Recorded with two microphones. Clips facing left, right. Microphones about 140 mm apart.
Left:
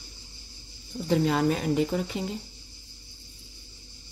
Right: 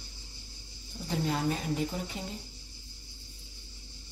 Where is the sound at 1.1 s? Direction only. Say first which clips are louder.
Left 7 dB; 80° left.